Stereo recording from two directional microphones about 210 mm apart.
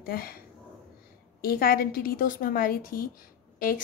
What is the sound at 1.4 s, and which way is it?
A woman's voice, 45° left (ahead or behind).